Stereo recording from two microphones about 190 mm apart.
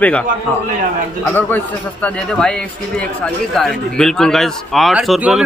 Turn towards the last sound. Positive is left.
turn(degrees=0)  # may be behind; listen again after turning